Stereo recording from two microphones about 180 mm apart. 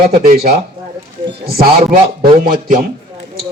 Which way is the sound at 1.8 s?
25° right (ahead or behind).